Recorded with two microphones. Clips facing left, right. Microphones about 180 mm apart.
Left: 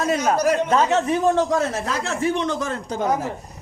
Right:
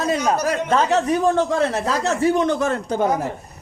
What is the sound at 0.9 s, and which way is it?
Speech, 35° right (ahead or behind).